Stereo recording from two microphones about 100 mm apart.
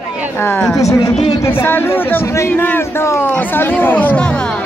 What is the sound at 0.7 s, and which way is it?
Speech, 30° left (ahead or behind).